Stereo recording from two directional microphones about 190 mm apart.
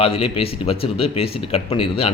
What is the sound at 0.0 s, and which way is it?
Speech, 30° left (ahead or behind).